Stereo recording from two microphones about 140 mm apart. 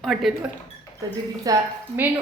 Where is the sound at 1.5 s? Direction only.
25° right (ahead or behind).